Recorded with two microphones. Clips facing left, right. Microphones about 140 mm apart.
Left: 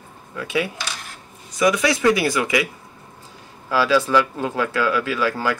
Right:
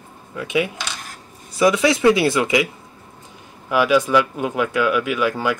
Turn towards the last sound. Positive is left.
turn(degrees=-20)  # may be behind; listen again after turning